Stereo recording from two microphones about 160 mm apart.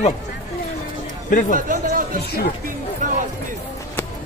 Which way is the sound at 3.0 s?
55° right (ahead or behind).